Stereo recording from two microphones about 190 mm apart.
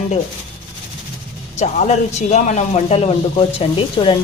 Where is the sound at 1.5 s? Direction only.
35° left (ahead or behind).